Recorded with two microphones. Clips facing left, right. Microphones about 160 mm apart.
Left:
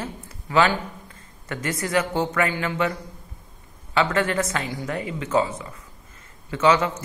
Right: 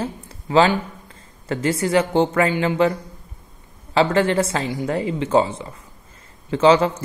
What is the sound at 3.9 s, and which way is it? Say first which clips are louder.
A man's voice: right 5 dB; 30° right (ahead or behind).